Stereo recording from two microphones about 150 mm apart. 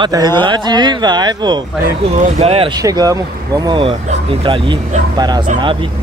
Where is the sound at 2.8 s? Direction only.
25° right (ahead or behind).